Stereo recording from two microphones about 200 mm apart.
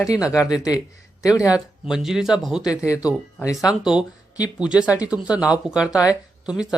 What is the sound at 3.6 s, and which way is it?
Speech, 5° right (ahead or behind).